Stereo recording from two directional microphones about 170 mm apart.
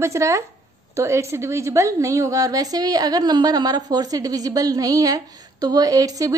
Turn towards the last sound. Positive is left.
turn(degrees=-20)  # may be behind; listen again after turning